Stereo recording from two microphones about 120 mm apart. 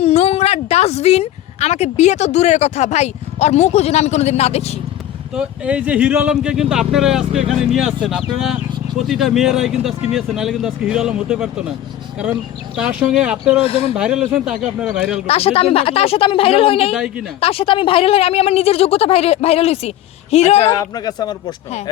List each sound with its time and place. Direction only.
0.0 s a woman's voice: 60° left (ahead or behind)
5.3 s speech: 5° right (ahead or behind)
13.6 s speech: 50° left (ahead or behind)
13.9 s speech: 5° right (ahead or behind)
15.3 s speech: 55° left (ahead or behind)
16.9 s speech: 5° right (ahead or behind)
17.4 s a woman's voice: 50° left (ahead or behind)
20.7 s speech: 35° left (ahead or behind)